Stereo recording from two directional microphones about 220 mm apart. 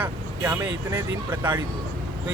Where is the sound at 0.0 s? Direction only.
10° right (ahead or behind).